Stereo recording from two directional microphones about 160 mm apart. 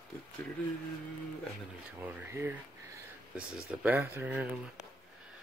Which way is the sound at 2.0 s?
15° right (ahead or behind).